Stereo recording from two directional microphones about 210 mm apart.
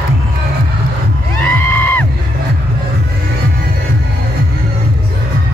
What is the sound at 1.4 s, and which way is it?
Music, 10° left (ahead or behind).